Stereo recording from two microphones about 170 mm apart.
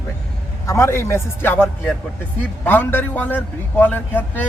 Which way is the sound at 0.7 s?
15° left (ahead or behind).